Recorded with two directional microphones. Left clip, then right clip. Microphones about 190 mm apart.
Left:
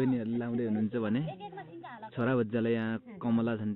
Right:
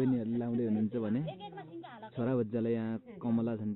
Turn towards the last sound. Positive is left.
turn(degrees=0)  # may be behind; listen again after turning